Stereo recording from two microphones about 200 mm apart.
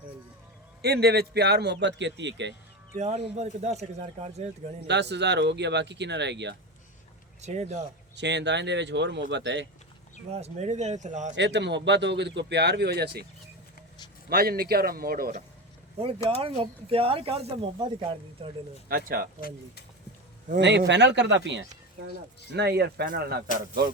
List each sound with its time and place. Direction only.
0.8 s a man's voice: 55° right (ahead or behind)
2.9 s speech: 35° right (ahead or behind)
4.9 s a man's voice: 60° right (ahead or behind)
7.4 s speech: 35° right (ahead or behind)
8.1 s a man's voice: 60° right (ahead or behind)
10.3 s speech: 35° right (ahead or behind)
11.3 s a man's voice: 60° right (ahead or behind)
14.3 s speech: 50° right (ahead or behind)
16.0 s speech: 30° right (ahead or behind)
18.9 s speech: 45° right (ahead or behind)
20.6 s a man's voice: 60° right (ahead or behind)